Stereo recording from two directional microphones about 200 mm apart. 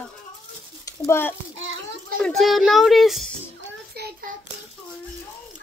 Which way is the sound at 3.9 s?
50° right (ahead or behind).